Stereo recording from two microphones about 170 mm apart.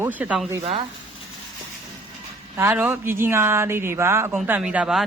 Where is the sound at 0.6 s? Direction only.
35° right (ahead or behind).